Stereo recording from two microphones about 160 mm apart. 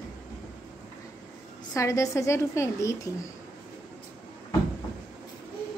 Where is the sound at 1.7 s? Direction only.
20° left (ahead or behind).